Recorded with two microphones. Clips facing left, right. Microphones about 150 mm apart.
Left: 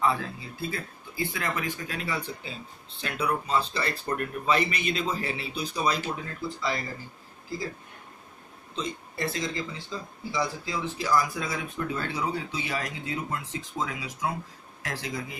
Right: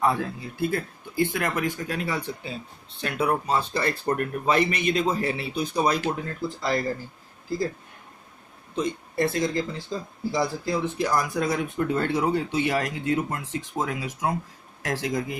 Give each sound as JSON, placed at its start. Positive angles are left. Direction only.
{"t": 0.0, "sound": "speech", "side_deg": -55}
{"t": 8.7, "sound": "speech", "side_deg": -55}